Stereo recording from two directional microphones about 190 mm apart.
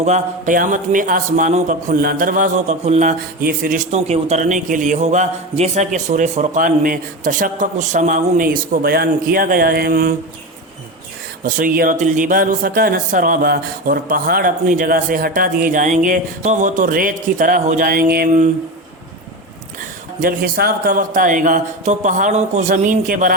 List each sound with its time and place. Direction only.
0.0 s speech: 40° right (ahead or behind)
3.9 s a man's voice: 35° right (ahead or behind)
11.4 s speech: 45° right (ahead or behind)
20.2 s speech: 50° right (ahead or behind)